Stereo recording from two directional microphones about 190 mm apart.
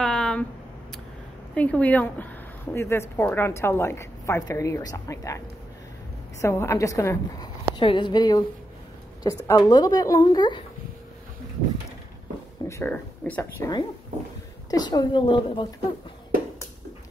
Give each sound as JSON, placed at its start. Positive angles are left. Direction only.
{"t": 0.0, "sound": "a sound", "side_deg": 5}
{"t": 1.5, "sound": "speech", "side_deg": 5}
{"t": 6.4, "sound": "speech", "side_deg": 15}
{"t": 12.6, "sound": "speech", "side_deg": 15}